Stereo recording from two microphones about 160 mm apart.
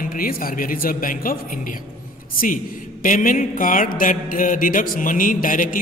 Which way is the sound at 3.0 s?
55° left (ahead or behind).